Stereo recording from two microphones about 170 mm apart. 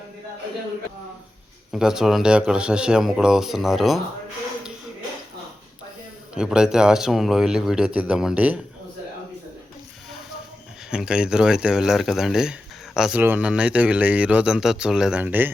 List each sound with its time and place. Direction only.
1.7 s speech: 5° right (ahead or behind)
6.3 s speech: 5° right (ahead or behind)
10.9 s speech: 5° right (ahead or behind)